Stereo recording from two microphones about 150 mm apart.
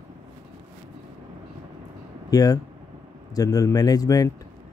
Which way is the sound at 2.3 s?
25° left (ahead or behind).